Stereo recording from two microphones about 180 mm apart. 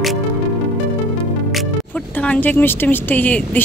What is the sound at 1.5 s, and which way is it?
A woman's voice, 5° left (ahead or behind).